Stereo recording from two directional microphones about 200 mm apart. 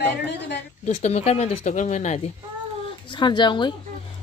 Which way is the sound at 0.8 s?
30° left (ahead or behind).